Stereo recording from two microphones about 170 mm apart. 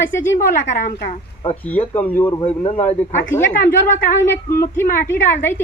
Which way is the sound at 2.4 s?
35° left (ahead or behind).